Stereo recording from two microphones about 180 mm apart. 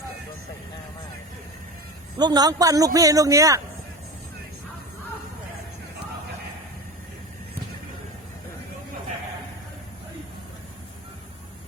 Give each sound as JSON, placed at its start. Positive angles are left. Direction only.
{"t": 2.1, "sound": "a man's voice", "side_deg": -20}